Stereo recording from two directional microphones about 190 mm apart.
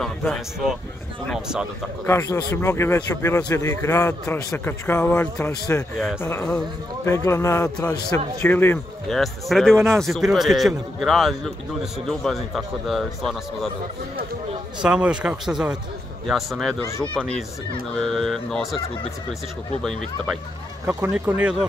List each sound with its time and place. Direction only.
0.0 s a man's voice: centre (ahead or behind)
2.0 s speech: 15° left (ahead or behind)
5.9 s a man's voice: centre (ahead or behind)
9.1 s a man's voice: centre (ahead or behind)
9.8 s speech: 15° right (ahead or behind)
10.0 s a man's voice: centre (ahead or behind)
14.8 s a man's voice: 5° right (ahead or behind)
20.8 s speech: 10° right (ahead or behind)